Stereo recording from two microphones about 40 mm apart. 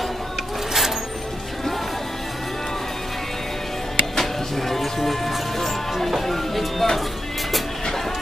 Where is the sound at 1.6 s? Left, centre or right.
Centre.